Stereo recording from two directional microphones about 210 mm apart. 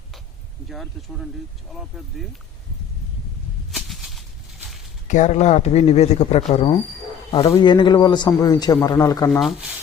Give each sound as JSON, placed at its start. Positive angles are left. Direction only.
{"t": 0.7, "sound": "speech", "side_deg": 0}
{"t": 3.7, "sound": "a sound", "side_deg": 0}
{"t": 5.0, "sound": "a man's voice", "side_deg": 35}
{"t": 9.4, "sound": "speech", "side_deg": 0}